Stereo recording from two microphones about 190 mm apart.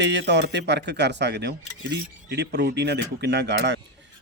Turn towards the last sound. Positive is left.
turn(degrees=-65)  # may be behind; listen again after turning